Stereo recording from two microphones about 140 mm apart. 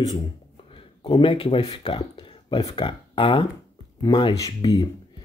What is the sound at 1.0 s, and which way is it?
Speech, 35° left (ahead or behind).